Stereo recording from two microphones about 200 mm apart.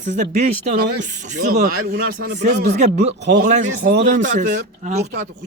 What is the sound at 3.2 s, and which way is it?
Speech, 55° right (ahead or behind).